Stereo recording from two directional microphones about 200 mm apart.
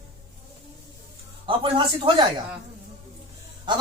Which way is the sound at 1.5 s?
25° right (ahead or behind).